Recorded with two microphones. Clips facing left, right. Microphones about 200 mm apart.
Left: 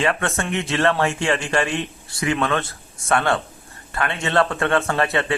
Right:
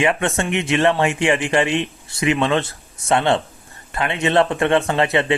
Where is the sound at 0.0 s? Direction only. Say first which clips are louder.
Right 3 dB; 15° right (ahead or behind).